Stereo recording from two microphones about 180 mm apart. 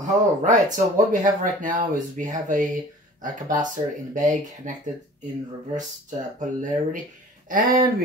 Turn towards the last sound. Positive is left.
turn(degrees=-50)  # may be behind; listen again after turning